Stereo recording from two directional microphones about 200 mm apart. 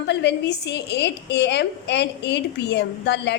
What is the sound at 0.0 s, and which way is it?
A woman's voice, 60° left (ahead or behind).